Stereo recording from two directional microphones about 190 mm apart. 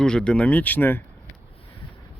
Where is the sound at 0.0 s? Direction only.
5° left (ahead or behind).